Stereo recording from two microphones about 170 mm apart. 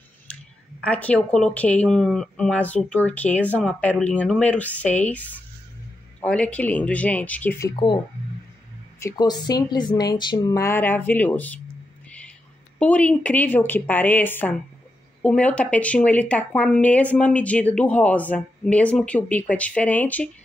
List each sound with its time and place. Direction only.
0.8 s speech: 10° left (ahead or behind)
7.7 s a woman's voice: 30° left (ahead or behind)
9.0 s a woman's voice: 25° left (ahead or behind)
12.7 s speech: 10° left (ahead or behind)